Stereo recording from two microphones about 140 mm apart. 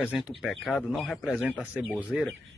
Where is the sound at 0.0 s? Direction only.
5° right (ahead or behind).